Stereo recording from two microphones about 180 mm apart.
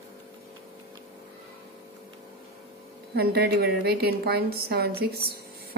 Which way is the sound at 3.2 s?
60° right (ahead or behind).